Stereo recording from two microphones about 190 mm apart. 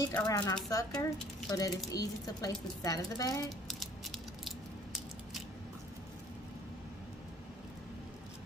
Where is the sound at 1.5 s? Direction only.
20° left (ahead or behind).